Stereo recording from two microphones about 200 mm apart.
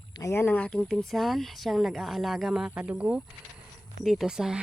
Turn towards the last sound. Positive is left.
turn(degrees=-5)  # may be behind; listen again after turning